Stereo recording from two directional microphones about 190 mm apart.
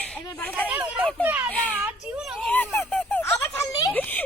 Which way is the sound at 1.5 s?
5° left (ahead or behind).